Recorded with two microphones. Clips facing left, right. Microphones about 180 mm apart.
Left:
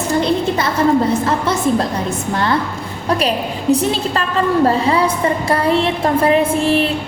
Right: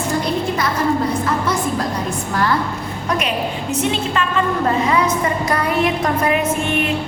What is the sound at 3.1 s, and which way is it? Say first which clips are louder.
A woman's voice: left 4 dB; 35° left (ahead or behind).